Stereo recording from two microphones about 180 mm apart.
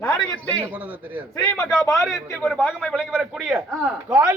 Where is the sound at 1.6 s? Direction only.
Centre (ahead or behind).